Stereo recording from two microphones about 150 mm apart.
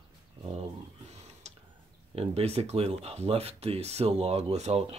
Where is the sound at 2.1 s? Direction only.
45° right (ahead or behind).